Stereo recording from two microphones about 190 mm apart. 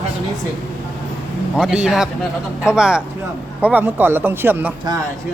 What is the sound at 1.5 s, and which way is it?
A man's voice, 5° right (ahead or behind).